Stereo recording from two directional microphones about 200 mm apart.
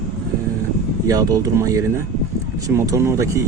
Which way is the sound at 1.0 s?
15° right (ahead or behind).